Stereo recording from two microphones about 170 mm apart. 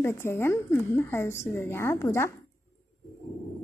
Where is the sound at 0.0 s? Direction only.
15° left (ahead or behind).